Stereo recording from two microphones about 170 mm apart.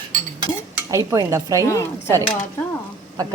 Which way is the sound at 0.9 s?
20° right (ahead or behind).